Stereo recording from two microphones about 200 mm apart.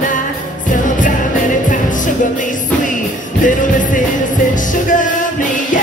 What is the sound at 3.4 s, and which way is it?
Music, 40° left (ahead or behind).